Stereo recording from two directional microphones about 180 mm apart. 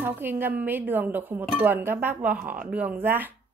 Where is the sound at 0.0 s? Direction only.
10° right (ahead or behind).